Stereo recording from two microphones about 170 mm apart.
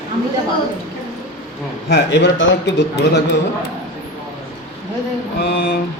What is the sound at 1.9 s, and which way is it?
A man's voice, 80° left.